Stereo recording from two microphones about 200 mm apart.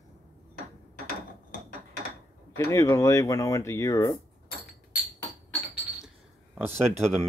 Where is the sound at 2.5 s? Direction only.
15° left (ahead or behind).